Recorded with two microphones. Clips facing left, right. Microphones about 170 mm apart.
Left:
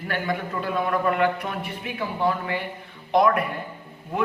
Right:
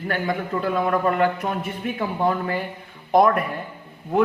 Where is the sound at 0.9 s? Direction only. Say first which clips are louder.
Right 1 dB; 40° right (ahead or behind).